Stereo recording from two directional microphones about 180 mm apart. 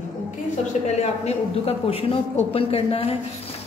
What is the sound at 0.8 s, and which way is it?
A man's voice, 35° left (ahead or behind).